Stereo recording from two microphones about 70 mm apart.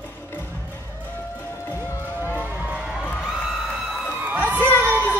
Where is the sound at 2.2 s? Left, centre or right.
Left.